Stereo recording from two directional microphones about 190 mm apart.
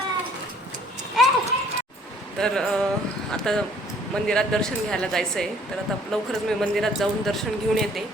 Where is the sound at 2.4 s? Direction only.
5° left (ahead or behind).